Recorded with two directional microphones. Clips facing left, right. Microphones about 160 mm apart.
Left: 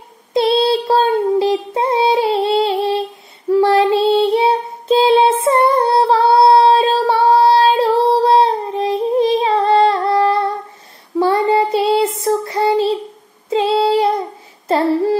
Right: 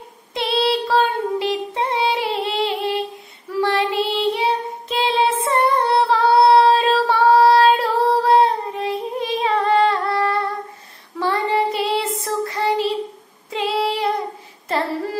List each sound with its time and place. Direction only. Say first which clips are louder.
0.3 s child singing: left 6 dB; 30° left (ahead or behind)
10.0 s humming: left 6 dB; 25° left (ahead or behind)
11.1 s child singing: left 6 dB; 25° left (ahead or behind)